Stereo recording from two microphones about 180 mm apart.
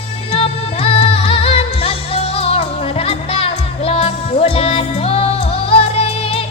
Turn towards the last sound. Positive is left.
turn(degrees=30)  # may be behind; listen again after turning